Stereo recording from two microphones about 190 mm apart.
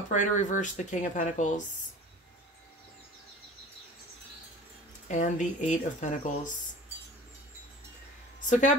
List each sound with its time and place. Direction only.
0.1 s speech: 40° left (ahead or behind)
5.0 s speech: 40° left (ahead or behind)
8.5 s speech: 40° left (ahead or behind)